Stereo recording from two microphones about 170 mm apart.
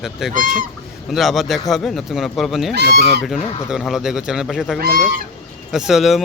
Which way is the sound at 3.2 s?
Centre (ahead or behind).